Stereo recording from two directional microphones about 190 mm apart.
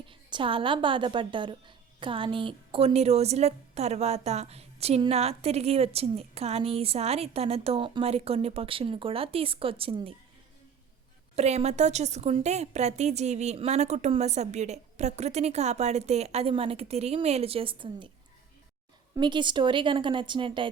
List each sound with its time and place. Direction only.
0.0 s a woman's voice: 25° right (ahead or behind)
11.3 s a woman's voice: 35° right (ahead or behind)
19.1 s a woman's voice: 25° right (ahead or behind)